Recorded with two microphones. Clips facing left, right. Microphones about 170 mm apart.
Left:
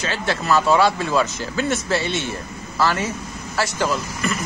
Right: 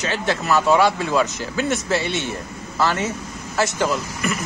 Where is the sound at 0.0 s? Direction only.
20° right (ahead or behind).